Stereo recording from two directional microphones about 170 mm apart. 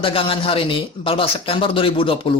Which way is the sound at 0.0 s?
30° left (ahead or behind).